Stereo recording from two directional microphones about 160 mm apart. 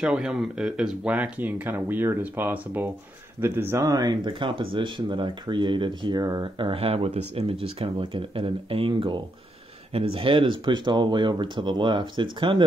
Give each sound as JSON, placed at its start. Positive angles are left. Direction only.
{"t": 0.0, "sound": "speech", "side_deg": -5}